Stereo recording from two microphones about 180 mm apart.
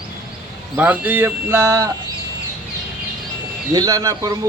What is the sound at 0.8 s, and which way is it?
Speech, 10° right (ahead or behind).